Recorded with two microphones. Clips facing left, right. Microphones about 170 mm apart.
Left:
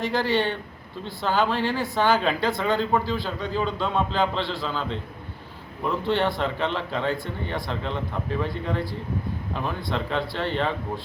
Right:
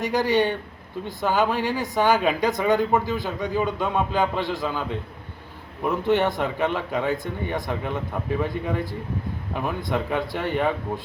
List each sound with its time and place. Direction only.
0.0 s speech: 15° right (ahead or behind)